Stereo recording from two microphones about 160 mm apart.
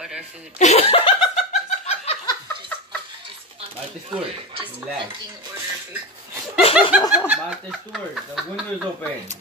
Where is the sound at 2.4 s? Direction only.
10° left (ahead or behind).